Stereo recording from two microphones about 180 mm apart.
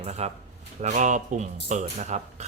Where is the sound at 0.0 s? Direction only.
40° right (ahead or behind).